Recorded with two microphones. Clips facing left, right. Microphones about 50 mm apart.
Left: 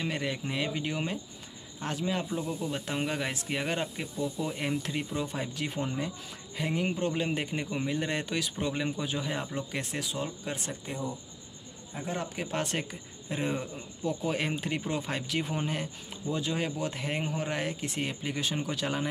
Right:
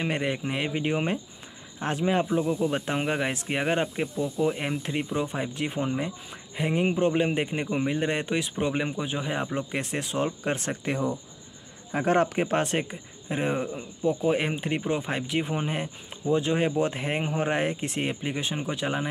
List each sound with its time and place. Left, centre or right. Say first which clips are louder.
0.0 s speech: right 5 dB; right
12.4 s speech: right 7 dB; right
18.2 s speech: right 2 dB; right